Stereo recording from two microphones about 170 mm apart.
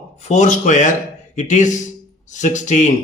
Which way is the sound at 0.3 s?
45° left (ahead or behind).